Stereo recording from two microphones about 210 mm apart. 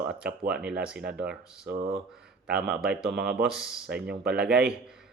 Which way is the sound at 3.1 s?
50° right (ahead or behind).